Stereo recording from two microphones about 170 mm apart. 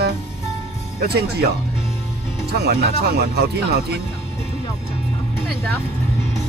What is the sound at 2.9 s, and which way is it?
Speech, 70° right (ahead or behind).